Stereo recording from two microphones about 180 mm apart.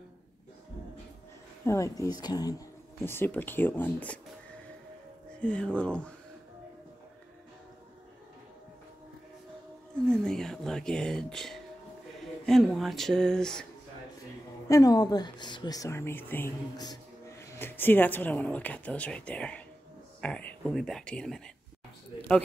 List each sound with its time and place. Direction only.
1.6 s speech: 15° left (ahead or behind)
5.4 s speech: 5° left (ahead or behind)
10.0 s speech: 5° left (ahead or behind)
14.7 s speech: 20° left (ahead or behind); by 21.4 s 5° left (ahead or behind)